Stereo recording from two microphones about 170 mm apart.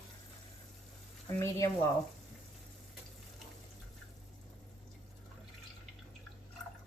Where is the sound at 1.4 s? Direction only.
20° left (ahead or behind).